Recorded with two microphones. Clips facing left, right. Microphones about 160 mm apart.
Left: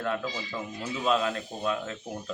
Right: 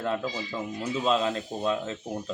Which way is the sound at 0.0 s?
25° right (ahead or behind).